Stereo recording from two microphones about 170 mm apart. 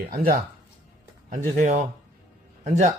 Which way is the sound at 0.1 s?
60° right (ahead or behind).